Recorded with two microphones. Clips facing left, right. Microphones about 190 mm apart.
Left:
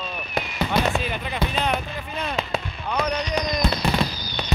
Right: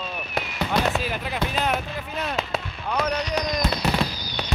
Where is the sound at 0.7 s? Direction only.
Centre (ahead or behind).